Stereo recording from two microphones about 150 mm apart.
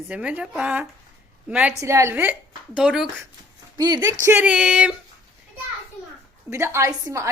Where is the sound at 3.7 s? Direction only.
25° right (ahead or behind).